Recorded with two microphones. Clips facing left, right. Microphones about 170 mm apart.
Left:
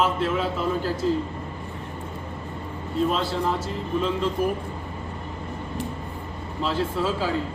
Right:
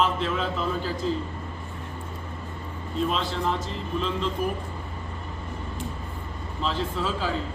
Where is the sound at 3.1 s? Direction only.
10° left (ahead or behind).